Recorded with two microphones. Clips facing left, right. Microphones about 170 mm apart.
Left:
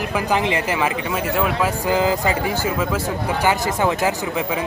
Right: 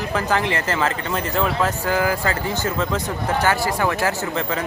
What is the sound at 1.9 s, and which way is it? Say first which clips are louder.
Speech: left 5 dB; 20° left (ahead or behind).